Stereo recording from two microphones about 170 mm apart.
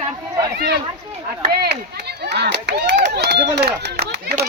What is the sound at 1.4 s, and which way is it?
Speech, 80° right.